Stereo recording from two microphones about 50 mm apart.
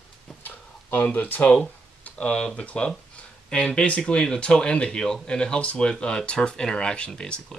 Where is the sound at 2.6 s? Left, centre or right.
Centre.